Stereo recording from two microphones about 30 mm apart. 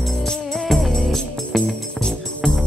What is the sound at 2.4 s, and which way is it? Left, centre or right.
Music, left.